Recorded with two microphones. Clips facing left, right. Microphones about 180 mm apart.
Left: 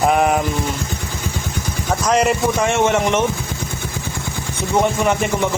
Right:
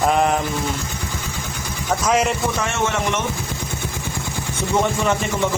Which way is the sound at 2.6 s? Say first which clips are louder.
Left 6 dB; 15° left (ahead or behind).